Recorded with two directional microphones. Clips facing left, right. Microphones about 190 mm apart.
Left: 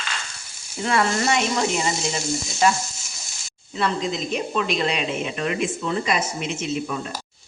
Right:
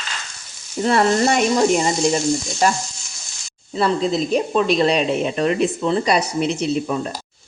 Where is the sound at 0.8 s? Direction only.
40° right (ahead or behind).